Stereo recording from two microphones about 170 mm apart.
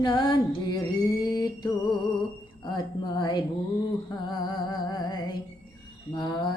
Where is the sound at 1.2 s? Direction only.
25° left (ahead or behind).